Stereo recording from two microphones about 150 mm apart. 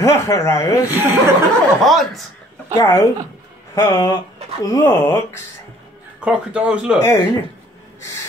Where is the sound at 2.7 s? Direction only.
20° left (ahead or behind).